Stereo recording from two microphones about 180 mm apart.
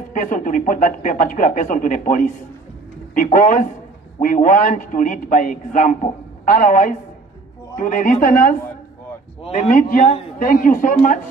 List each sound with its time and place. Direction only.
0.1 s speech: 45° left (ahead or behind)
9.4 s a man's voice: 35° left (ahead or behind)